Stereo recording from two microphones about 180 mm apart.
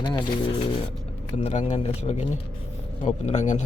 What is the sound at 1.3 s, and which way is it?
A man's voice, 35° left (ahead or behind).